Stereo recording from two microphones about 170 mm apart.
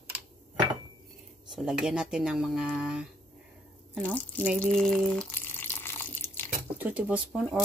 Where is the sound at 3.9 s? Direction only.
10° left (ahead or behind).